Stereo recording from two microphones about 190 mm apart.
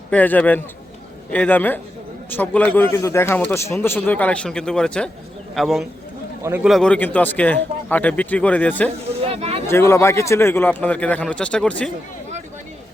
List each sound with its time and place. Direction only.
0.1 s a man's voice: 10° left (ahead or behind)
8.9 s a sound: 30° right (ahead or behind)
9.6 s a man's voice: 15° left (ahead or behind)